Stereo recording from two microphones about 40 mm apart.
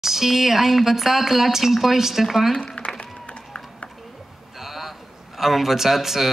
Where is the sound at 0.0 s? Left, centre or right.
Centre.